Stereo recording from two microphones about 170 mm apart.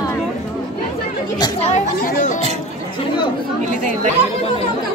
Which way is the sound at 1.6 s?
45° left (ahead or behind).